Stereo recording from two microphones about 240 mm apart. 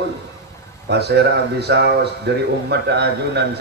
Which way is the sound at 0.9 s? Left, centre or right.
Right.